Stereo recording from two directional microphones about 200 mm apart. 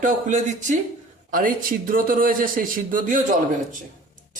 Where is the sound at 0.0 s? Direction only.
40° right (ahead or behind).